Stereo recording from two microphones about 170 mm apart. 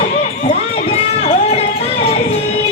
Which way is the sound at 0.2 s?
35° left (ahead or behind).